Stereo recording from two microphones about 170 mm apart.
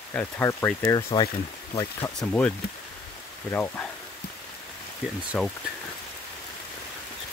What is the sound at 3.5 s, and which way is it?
Speech, 10° left (ahead or behind).